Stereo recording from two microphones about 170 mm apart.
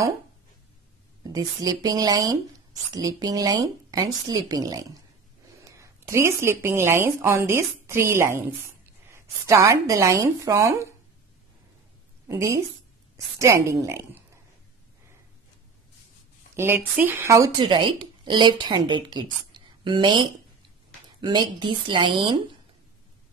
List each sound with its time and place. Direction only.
1.2 s a woman's voice: 20° right (ahead or behind)
12.3 s a woman's voice: 20° right (ahead or behind)
16.5 s a woman's voice: 15° right (ahead or behind)